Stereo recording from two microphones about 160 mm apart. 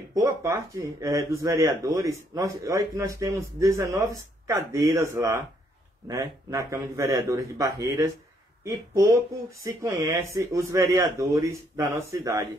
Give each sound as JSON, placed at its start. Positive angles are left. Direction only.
{"t": 0.1, "sound": "speech", "side_deg": -20}